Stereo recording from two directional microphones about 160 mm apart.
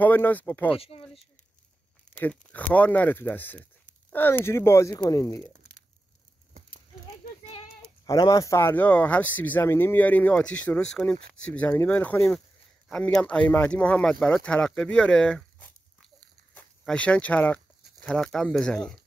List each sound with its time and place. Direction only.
0.0 s speech: 10° left (ahead or behind)
0.7 s speech: 35° left (ahead or behind)
2.1 s speech: 10° left (ahead or behind)
8.0 s speech: 25° left (ahead or behind); by 18.9 s 5° left (ahead or behind)